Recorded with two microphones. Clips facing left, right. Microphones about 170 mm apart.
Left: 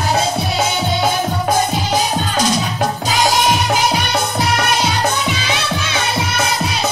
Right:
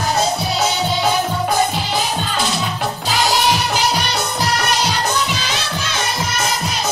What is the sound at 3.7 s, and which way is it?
Music, 55° left (ahead or behind).